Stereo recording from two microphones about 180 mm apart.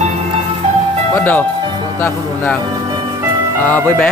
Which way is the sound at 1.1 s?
10° left (ahead or behind).